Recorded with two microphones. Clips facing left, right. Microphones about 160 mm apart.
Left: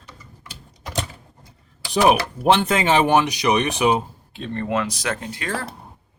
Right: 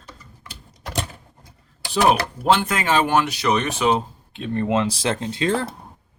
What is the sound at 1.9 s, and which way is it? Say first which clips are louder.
Speech: left 1 dB; 15° left (ahead or behind).